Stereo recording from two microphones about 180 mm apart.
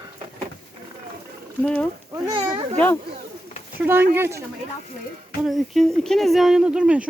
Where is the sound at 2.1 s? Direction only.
25° right (ahead or behind).